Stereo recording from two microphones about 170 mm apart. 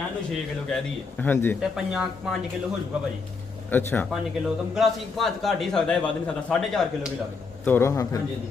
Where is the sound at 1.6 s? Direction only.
5° right (ahead or behind).